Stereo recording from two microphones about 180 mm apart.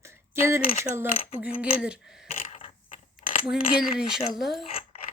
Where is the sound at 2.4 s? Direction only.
40° left (ahead or behind).